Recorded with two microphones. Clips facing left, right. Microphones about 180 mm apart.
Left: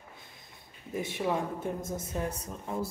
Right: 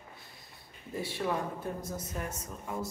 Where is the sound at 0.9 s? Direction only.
20° left (ahead or behind).